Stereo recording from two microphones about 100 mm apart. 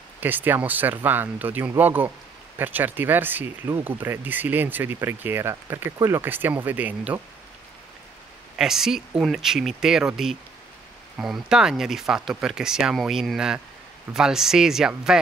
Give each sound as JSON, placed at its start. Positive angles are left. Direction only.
{"t": 0.2, "sound": "speech", "side_deg": -20}
{"t": 8.5, "sound": "speech", "side_deg": -5}